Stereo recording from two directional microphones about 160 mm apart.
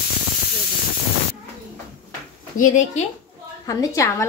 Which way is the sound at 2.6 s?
50° left (ahead or behind).